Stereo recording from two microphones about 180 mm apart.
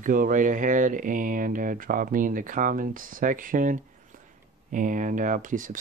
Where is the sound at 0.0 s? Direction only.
50° right (ahead or behind).